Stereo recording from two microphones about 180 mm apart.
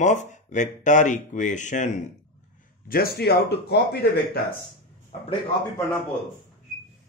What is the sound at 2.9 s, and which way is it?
Speech, 60° left (ahead or behind).